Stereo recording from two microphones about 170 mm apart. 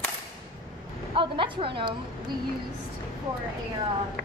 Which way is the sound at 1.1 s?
30° right (ahead or behind).